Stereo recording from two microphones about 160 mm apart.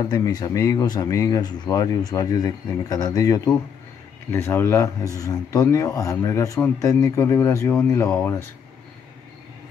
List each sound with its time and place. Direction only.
0.0 s speech: 25° left (ahead or behind)